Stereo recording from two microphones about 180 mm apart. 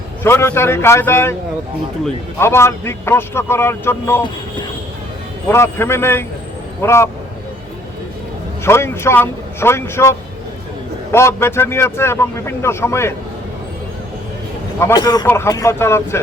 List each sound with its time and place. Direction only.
0.2 s a man's voice: 15° left (ahead or behind)
2.4 s a man's voice: 15° left (ahead or behind)
5.5 s a man's voice: 15° left (ahead or behind)
8.6 s a man's voice: 15° left (ahead or behind)
14.8 s a man's voice: 15° left (ahead or behind)